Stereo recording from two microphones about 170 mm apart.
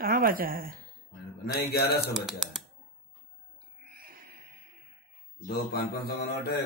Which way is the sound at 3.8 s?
60° right (ahead or behind).